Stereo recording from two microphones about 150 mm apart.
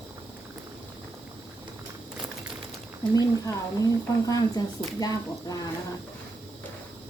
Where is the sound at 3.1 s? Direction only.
20° left (ahead or behind).